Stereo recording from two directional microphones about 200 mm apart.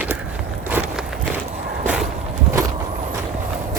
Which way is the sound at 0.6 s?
10° right (ahead or behind).